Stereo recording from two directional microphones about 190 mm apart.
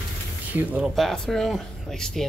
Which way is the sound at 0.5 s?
10° right (ahead or behind).